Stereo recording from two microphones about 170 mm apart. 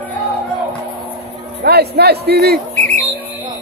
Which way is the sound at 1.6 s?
70° right (ahead or behind).